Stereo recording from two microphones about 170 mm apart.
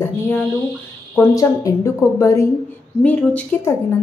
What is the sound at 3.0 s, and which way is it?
Speech, 5° left (ahead or behind).